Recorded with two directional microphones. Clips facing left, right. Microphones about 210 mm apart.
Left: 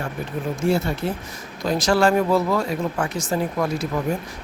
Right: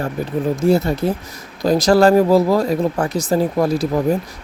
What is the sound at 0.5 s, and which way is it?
Speech, 40° right (ahead or behind).